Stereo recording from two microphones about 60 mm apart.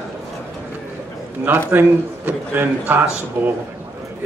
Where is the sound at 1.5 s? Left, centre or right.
Right.